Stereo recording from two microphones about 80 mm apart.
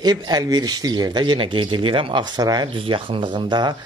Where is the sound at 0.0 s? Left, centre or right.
Right.